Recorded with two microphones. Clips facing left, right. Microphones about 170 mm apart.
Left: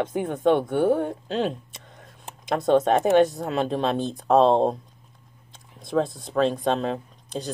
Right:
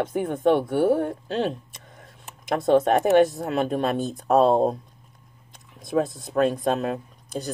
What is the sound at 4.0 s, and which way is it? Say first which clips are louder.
Speech: left 1 dB; 10° right (ahead or behind).